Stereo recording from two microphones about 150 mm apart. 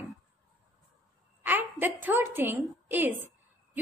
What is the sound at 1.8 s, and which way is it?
A woman's voice, 15° right (ahead or behind).